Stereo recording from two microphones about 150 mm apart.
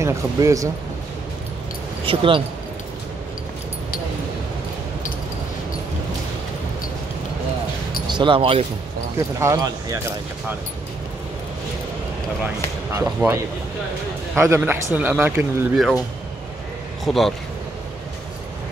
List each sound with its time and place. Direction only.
0.0 s speech: 20° right (ahead or behind)
2.0 s speech: 35° right (ahead or behind)
8.1 s speech: 35° right (ahead or behind)
9.2 s speech: 25° right (ahead or behind)
12.9 s a man's voice: 20° right (ahead or behind)
15.7 s speech: centre (ahead or behind)
17.0 s speech: centre (ahead or behind)